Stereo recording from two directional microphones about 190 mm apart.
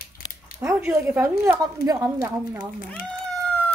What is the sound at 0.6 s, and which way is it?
A woman's voice, 15° right (ahead or behind).